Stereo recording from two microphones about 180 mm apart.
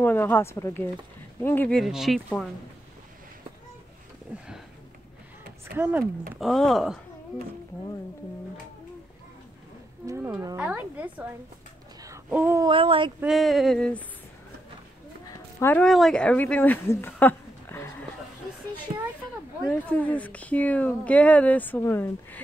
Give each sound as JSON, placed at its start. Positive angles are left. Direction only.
{"t": 0.0, "sound": "speech", "side_deg": 10}
{"t": 4.3, "sound": "speech", "side_deg": -10}
{"t": 5.8, "sound": "speech", "side_deg": -10}
{"t": 6.4, "sound": "speech", "side_deg": 0}
{"t": 10.0, "sound": "speech", "side_deg": -15}
{"t": 12.3, "sound": "speech", "side_deg": -10}
{"t": 12.6, "sound": "speech", "side_deg": -30}
{"t": 13.2, "sound": "speech", "side_deg": 0}
{"t": 15.2, "sound": "speech", "side_deg": 10}
{"t": 18.9, "sound": "speech", "side_deg": -40}
{"t": 19.9, "sound": "speech", "side_deg": 10}